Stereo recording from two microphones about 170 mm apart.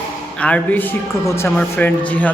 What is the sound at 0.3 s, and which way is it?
A man's voice, 5° left (ahead or behind).